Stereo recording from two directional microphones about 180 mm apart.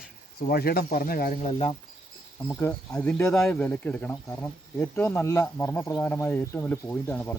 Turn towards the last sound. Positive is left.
turn(degrees=10)  # may be behind; listen again after turning